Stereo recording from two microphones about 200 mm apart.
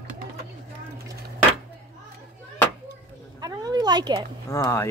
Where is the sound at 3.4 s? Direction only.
20° right (ahead or behind).